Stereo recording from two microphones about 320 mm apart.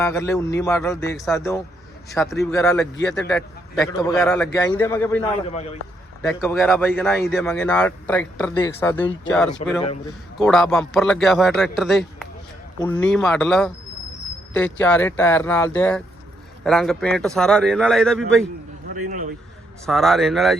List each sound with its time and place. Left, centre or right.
0.0 s a man's voice: centre
6.2 s a man's voice: centre
19.0 s a man's voice: right
19.8 s a man's voice: centre